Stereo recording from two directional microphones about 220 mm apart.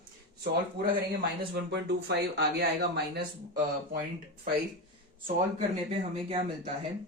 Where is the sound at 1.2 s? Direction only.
50° right (ahead or behind).